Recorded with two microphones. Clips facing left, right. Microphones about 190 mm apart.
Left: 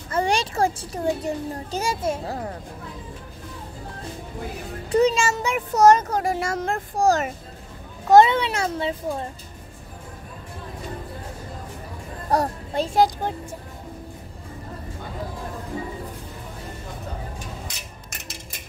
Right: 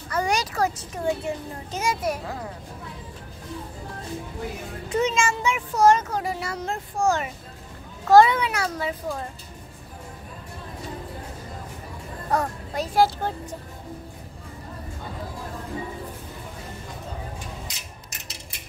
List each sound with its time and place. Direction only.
0.1 s a child's voice: 30° left (ahead or behind)
4.8 s a child's voice: 35° left (ahead or behind)
8.1 s a child's voice: 25° left (ahead or behind)
12.3 s speech: 30° left (ahead or behind)
13.0 s speech: 15° left (ahead or behind)